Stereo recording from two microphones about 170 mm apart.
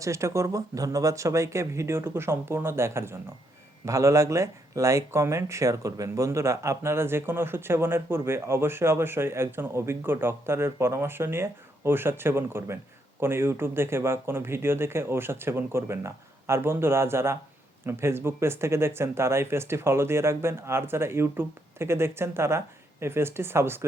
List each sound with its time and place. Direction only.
0.0 s speech: 15° right (ahead or behind)